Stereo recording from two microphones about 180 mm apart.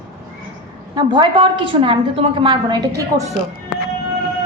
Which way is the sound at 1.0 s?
25° right (ahead or behind).